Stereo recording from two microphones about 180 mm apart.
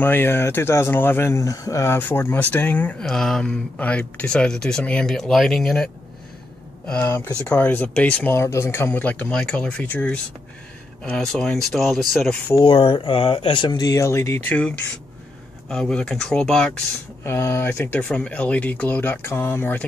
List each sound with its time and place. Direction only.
0.0 s speech: 10° left (ahead or behind)
6.9 s speech: 10° left (ahead or behind)
12.5 s speech: 30° left (ahead or behind); by 19.8 s 10° left (ahead or behind)